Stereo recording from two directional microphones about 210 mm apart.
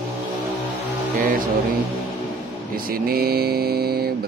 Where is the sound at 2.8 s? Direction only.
45° right (ahead or behind).